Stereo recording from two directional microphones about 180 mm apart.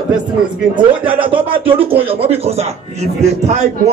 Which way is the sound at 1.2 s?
30° right (ahead or behind).